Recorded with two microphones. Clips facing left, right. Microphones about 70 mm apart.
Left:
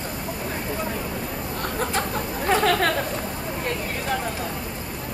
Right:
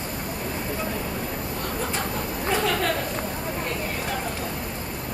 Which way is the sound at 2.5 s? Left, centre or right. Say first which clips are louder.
Left 4 dB; left.